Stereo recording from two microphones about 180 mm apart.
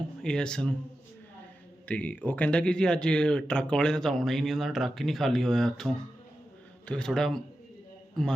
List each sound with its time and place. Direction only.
0.2 s speech: 5° left (ahead or behind)
1.9 s a man's voice: 10° left (ahead or behind)